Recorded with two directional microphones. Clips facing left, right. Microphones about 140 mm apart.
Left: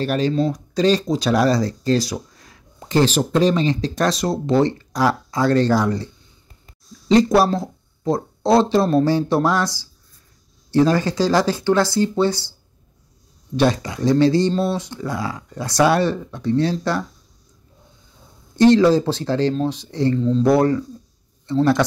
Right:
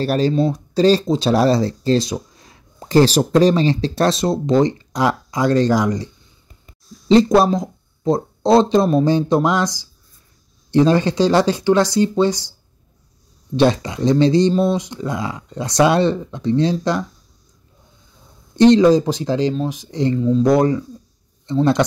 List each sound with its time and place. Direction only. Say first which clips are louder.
0.0 s speech: right 2 dB; 35° right (ahead or behind)
2.9 s speech: right 4 dB; 40° right (ahead or behind); by 6.0 s 15° right (ahead or behind)
7.1 s speech: right 2 dB; 25° right (ahead or behind)
13.6 s speech: right 3 dB; 25° right (ahead or behind)
18.6 s speech: right 2 dB; 20° right (ahead or behind)